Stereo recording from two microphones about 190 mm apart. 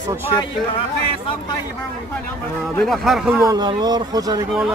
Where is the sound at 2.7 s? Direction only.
Centre (ahead or behind).